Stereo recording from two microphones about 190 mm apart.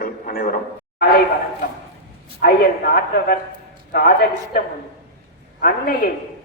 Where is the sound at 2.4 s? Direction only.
55° left (ahead or behind).